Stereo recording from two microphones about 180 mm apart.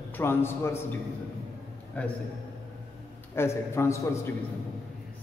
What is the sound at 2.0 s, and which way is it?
Speech, 10° left (ahead or behind).